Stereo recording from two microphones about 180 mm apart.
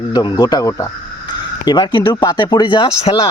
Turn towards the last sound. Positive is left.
turn(degrees=30)  # may be behind; listen again after turning